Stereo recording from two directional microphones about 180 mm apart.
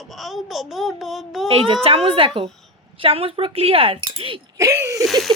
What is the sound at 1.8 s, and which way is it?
Speech, 30° right (ahead or behind).